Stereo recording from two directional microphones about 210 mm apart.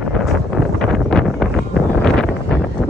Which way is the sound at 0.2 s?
Centre (ahead or behind).